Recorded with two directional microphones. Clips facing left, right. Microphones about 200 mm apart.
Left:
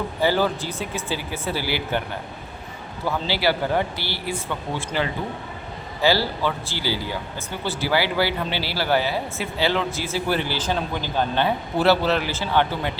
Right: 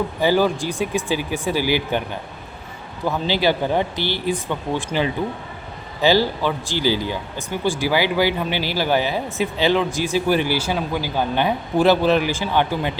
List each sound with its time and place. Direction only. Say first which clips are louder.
0.2 s speech: right 3 dB; 15° right (ahead or behind)
3.1 s speech: right 3 dB; 20° right (ahead or behind)